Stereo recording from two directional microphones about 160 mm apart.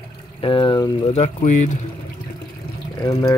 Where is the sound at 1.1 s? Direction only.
45° left (ahead or behind).